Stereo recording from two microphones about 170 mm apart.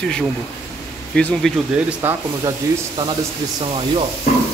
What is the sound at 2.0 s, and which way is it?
Speech, 15° right (ahead or behind).